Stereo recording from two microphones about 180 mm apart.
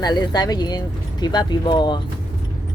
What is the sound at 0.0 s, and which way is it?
Speech, 20° left (ahead or behind).